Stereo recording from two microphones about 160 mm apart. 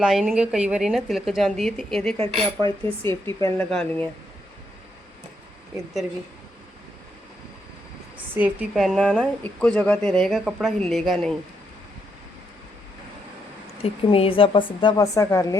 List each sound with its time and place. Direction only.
0.0 s speech: centre (ahead or behind)
2.3 s speech: 30° right (ahead or behind)
2.8 s speech: 15° left (ahead or behind)
8.7 s speech: centre (ahead or behind)
13.8 s speech: 35° left (ahead or behind); by 15.5 s 20° left (ahead or behind)